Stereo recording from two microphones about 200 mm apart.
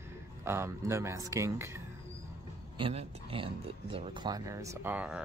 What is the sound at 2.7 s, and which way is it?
Speech, 25° right (ahead or behind).